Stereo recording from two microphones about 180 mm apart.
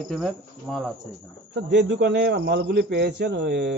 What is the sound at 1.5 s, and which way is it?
Speech, 75° right (ahead or behind).